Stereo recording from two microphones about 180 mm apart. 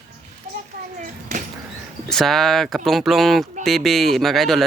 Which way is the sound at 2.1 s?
Centre (ahead or behind).